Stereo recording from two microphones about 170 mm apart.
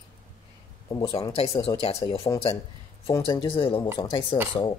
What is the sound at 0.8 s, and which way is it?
Speech, 25° left (ahead or behind).